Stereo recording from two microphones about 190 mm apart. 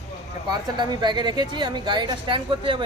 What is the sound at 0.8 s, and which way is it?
A woman's voice, 25° right (ahead or behind).